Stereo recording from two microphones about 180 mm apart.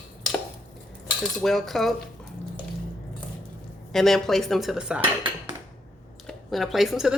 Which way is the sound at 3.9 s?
Centre (ahead or behind).